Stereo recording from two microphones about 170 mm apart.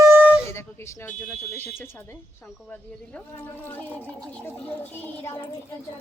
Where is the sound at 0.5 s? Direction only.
15° left (ahead or behind).